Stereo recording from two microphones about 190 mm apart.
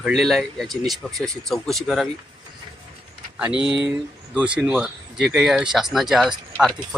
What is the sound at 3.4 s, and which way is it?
Speech, 5° right (ahead or behind).